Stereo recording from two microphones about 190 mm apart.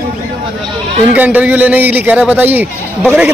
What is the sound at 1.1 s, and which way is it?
A man's voice, 10° right (ahead or behind).